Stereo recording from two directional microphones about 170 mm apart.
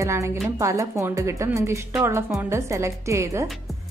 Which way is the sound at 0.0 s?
15° right (ahead or behind).